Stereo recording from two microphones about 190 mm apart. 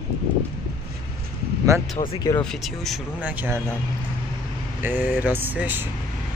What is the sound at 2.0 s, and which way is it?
Speech, 25° left (ahead or behind).